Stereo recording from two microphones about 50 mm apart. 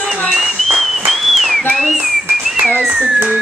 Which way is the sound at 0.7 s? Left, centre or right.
Centre.